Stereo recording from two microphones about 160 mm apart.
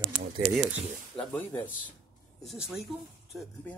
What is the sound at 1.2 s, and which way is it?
Speech, 5° left (ahead or behind).